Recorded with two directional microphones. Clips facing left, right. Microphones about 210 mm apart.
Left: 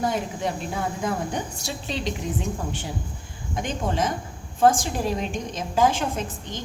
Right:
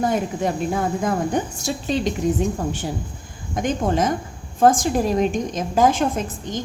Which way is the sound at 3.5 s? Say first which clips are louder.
Right 6 dB; 45° right (ahead or behind).